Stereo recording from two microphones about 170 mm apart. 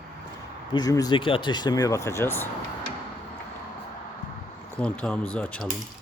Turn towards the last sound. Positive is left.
turn(degrees=5)  # may be behind; listen again after turning